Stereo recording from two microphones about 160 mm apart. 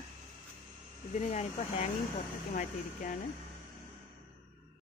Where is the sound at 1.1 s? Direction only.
45° left (ahead or behind).